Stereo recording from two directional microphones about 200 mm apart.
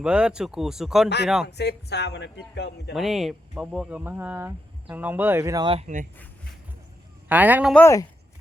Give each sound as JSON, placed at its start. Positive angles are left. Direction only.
{"t": 0.0, "sound": "speech", "side_deg": -5}
{"t": 1.5, "sound": "speech", "side_deg": 55}
{"t": 2.9, "sound": "speech", "side_deg": 0}
{"t": 7.3, "sound": "speech", "side_deg": -10}
{"t": 7.7, "sound": "speech", "side_deg": 10}